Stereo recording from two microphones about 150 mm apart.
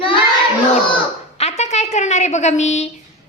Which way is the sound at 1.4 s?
45° left (ahead or behind).